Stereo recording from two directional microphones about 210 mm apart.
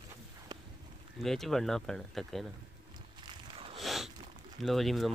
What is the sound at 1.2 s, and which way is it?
Speech, centre (ahead or behind).